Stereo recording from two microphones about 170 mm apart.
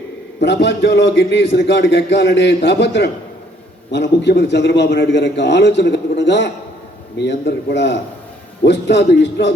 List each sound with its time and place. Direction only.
0.3 s a man's voice: 90° left